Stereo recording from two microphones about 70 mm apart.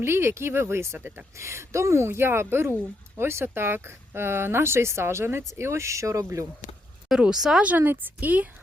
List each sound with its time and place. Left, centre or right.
0.0 s speech: right
0.9 s a woman's voice: right
1.4 s speech: right
7.1 s speech: centre
7.6 s a woman's voice: right